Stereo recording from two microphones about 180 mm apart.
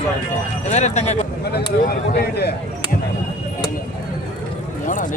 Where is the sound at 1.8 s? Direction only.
60° left (ahead or behind).